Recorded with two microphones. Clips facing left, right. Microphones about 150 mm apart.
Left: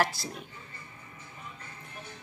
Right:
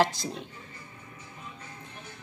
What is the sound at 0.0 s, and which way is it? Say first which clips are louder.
Speech: right 4 dB; 20° right (ahead or behind).